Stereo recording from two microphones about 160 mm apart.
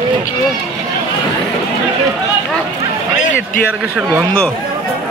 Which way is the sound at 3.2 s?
50° left (ahead or behind).